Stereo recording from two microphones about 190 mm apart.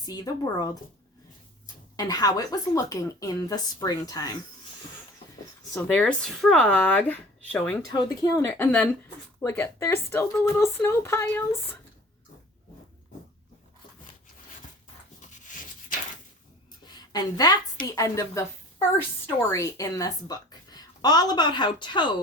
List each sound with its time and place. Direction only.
0.0 s a woman's voice: 20° left (ahead or behind)
5.7 s speech: 10° left (ahead or behind)
7.9 s a woman's voice: 20° left (ahead or behind)
8.4 s speech: 10° left (ahead or behind)
15.3 s a sound: 40° left (ahead or behind)
17.0 s a woman's voice: 20° left (ahead or behind)